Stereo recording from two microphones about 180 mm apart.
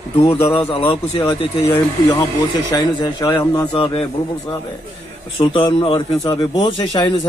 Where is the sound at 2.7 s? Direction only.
20° left (ahead or behind).